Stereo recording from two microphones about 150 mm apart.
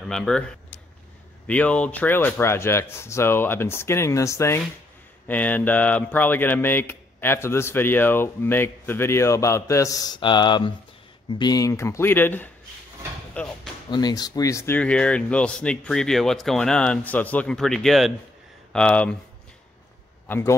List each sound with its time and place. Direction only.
0.1 s speech: 5° left (ahead or behind)
1.5 s speech: 10° left (ahead or behind)
13.8 s speech: 30° left (ahead or behind)
14.8 s speech: 10° left (ahead or behind)
20.2 s a man's voice: 15° left (ahead or behind)